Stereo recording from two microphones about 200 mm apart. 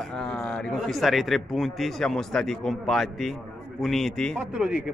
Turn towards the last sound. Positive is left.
turn(degrees=-5)  # may be behind; listen again after turning